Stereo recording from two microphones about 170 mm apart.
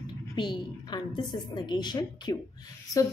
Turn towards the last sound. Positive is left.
turn(degrees=25)  # may be behind; listen again after turning